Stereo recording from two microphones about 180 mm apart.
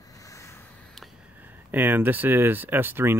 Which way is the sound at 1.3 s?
10° right (ahead or behind).